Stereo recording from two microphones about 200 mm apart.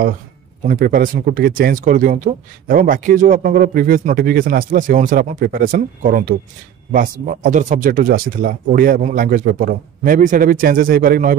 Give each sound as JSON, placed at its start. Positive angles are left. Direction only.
{"t": 0.7, "sound": "speech", "side_deg": -45}